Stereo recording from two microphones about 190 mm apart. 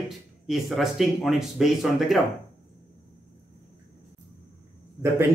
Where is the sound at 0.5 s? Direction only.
Centre (ahead or behind).